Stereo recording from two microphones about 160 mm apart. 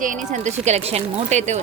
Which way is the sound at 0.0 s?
55° right (ahead or behind).